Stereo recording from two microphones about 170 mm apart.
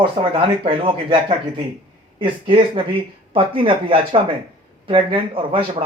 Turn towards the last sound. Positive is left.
turn(degrees=-30)  # may be behind; listen again after turning